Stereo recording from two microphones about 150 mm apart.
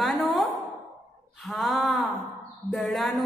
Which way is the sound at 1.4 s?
Centre (ahead or behind).